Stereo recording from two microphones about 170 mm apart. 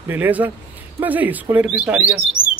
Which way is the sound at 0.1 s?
10° right (ahead or behind).